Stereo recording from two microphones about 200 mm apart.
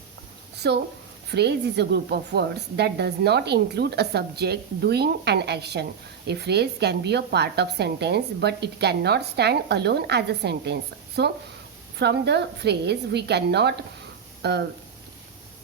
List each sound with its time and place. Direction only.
0.6 s speech: 55° right (ahead or behind)